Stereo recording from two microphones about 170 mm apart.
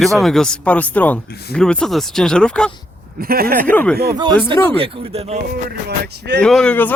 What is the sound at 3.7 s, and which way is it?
Speech, 10° left (ahead or behind).